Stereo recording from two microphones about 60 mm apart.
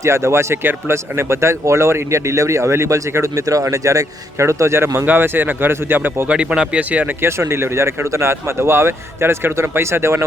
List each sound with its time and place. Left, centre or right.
0.0 s speech: right
5.0 s speech: right
6.2 s speech: centre
7.2 s speech: right